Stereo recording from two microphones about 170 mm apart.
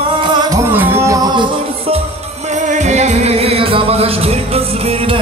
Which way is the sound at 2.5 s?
45° right (ahead or behind).